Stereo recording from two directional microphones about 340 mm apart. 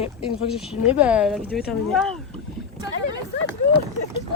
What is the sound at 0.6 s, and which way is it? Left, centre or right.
Speech, centre.